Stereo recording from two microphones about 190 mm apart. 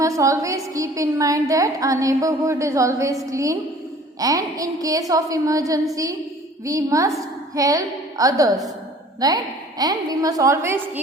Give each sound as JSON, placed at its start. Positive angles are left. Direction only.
{"t": 0.0, "sound": "a woman's voice", "side_deg": -15}